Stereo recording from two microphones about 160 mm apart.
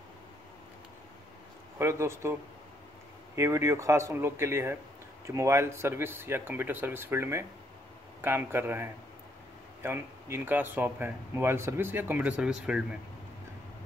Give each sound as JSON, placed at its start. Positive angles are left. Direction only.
{"t": 1.8, "sound": "speech", "side_deg": -15}
{"t": 3.3, "sound": "speech", "side_deg": -20}